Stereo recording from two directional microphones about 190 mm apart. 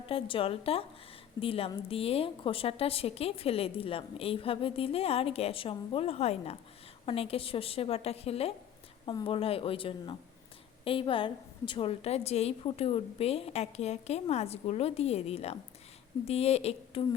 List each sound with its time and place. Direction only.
0.1 s a woman's voice: 30° left (ahead or behind)